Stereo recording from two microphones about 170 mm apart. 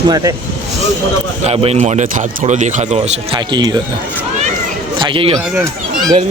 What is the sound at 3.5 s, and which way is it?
Speech, 25° right (ahead or behind).